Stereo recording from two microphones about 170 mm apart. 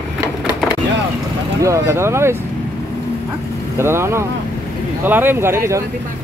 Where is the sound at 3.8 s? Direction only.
15° right (ahead or behind).